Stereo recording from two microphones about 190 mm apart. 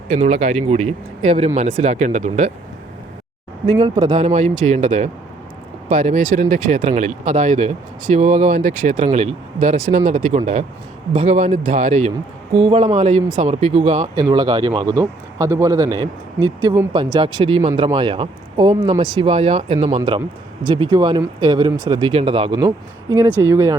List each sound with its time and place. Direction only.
0.1 s speech: 35° right (ahead or behind)
3.8 s speech: 20° right (ahead or behind)
4.2 s speech: 35° right (ahead or behind)
14.2 s speech: 20° right (ahead or behind); by 20.0 s 40° right (ahead or behind)
20.0 s speech: 25° right (ahead or behind)